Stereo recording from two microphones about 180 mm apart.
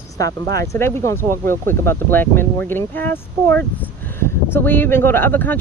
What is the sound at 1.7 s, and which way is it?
Speech, 10° left (ahead or behind).